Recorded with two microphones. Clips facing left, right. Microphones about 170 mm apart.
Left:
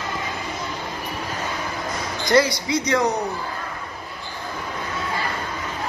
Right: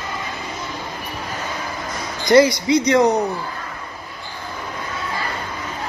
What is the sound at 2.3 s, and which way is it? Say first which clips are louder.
Speech: right 6 dB; 20° right (ahead or behind).